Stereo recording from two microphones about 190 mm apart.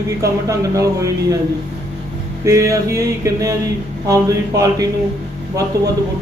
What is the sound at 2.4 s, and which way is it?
Speech, 15° right (ahead or behind).